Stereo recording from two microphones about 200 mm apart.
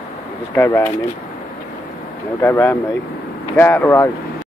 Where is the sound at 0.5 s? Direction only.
10° left (ahead or behind).